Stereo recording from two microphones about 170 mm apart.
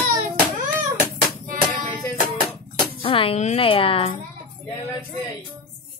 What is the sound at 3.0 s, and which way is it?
A woman's voice, 30° left (ahead or behind).